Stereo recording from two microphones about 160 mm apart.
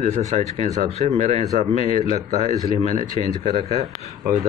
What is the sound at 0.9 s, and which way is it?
Speech, 45° right (ahead or behind).